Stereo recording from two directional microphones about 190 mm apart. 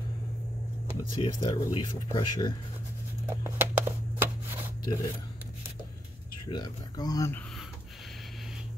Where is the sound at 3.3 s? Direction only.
10° right (ahead or behind).